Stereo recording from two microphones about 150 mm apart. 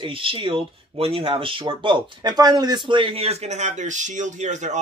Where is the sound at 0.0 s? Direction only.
35° right (ahead or behind).